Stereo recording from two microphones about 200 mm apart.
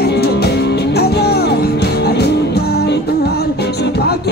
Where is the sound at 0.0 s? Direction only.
55° left (ahead or behind).